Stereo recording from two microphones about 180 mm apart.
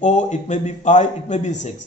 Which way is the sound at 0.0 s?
40° left (ahead or behind).